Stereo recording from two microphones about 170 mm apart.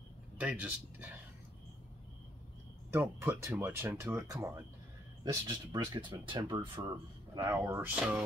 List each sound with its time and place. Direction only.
0.4 s speech: 10° right (ahead or behind)
2.9 s speech: 15° right (ahead or behind)
7.3 s speech: 15° right (ahead or behind)